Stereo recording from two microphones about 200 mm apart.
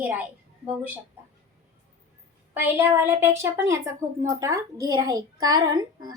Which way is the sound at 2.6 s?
10° right (ahead or behind).